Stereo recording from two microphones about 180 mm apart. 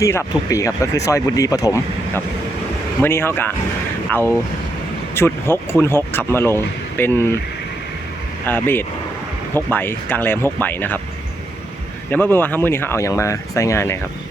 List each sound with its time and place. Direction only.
0.0 s speech: 15° left (ahead or behind)
8.4 s speech: 10° left (ahead or behind)
12.1 s speech: 10° left (ahead or behind)